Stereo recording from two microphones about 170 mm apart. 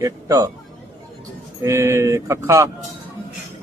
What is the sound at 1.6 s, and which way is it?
A man's voice, 15° right (ahead or behind).